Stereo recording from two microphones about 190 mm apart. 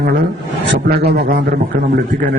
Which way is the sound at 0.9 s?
55° right (ahead or behind).